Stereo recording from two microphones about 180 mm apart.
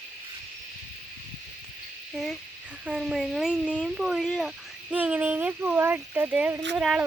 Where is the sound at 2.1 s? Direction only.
Centre (ahead or behind).